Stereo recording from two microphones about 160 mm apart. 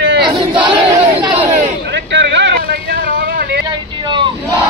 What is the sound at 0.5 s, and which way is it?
Battle cry, 30° right (ahead or behind).